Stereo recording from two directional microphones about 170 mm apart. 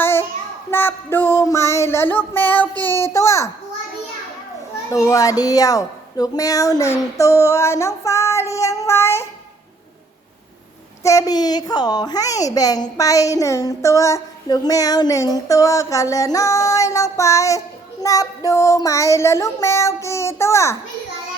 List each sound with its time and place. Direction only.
0.0 s child singing: 15° left (ahead or behind)
4.9 s a child's voice: 20° left (ahead or behind)
7.2 s child singing: 15° left (ahead or behind)
11.0 s a child's voice: 20° left (ahead or behind)
18.0 s child singing: 20° left (ahead or behind)